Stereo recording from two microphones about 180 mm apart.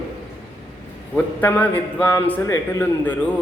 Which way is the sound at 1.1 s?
10° left (ahead or behind).